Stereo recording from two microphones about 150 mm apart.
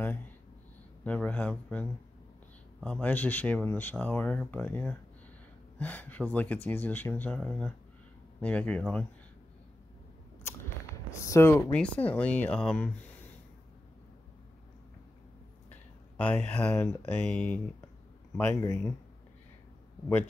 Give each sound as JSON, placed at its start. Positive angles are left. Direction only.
{"t": 1.0, "sound": "speech", "side_deg": 10}
{"t": 10.4, "sound": "speech", "side_deg": 20}
{"t": 15.7, "sound": "speech", "side_deg": 10}
{"t": 18.6, "sound": "speech", "side_deg": 20}